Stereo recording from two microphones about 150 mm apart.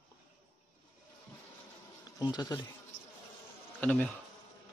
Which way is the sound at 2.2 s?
25° left (ahead or behind).